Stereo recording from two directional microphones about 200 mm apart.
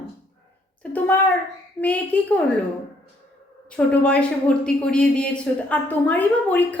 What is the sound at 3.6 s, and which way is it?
A woman's voice, 5° left (ahead or behind).